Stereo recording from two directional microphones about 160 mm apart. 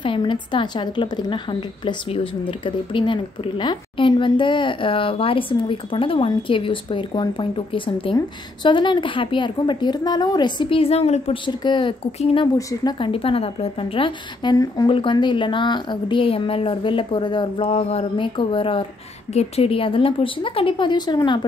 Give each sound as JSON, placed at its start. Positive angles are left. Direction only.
{"t": 0.0, "sound": "a woman's voice", "side_deg": 30}